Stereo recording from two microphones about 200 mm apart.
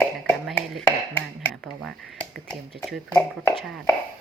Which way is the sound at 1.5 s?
Centre (ahead or behind).